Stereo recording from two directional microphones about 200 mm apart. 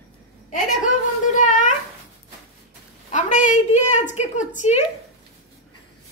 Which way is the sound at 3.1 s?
35° left (ahead or behind).